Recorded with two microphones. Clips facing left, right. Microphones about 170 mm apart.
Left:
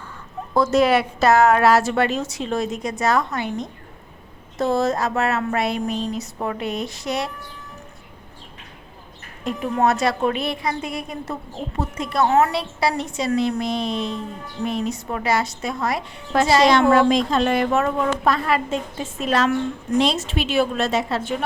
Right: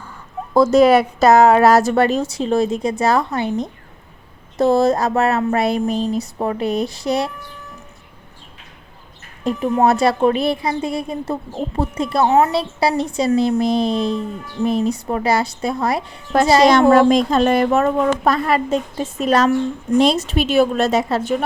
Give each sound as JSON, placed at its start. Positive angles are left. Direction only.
{"t": 0.5, "sound": "a woman's voice", "side_deg": -40}
{"t": 9.4, "sound": "a woman's voice", "side_deg": -35}
{"t": 12.2, "sound": "a woman's voice", "side_deg": -20}
{"t": 12.5, "sound": "a woman's voice", "side_deg": -30}